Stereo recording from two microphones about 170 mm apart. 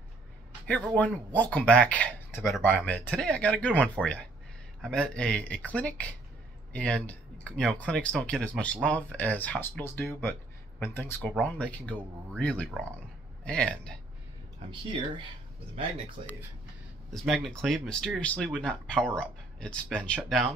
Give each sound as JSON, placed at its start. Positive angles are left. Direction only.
{"t": 0.9, "sound": "speech", "side_deg": 10}
{"t": 14.7, "sound": "speech", "side_deg": -30}
{"t": 17.1, "sound": "speech", "side_deg": 0}